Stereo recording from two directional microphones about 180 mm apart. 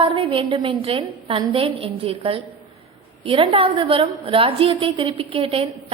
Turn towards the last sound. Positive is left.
turn(degrees=-30)  # may be behind; listen again after turning